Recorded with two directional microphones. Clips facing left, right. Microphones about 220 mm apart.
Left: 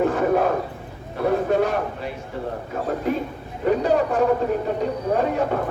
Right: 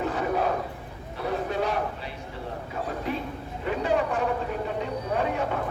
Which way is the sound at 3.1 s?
45° left (ahead or behind).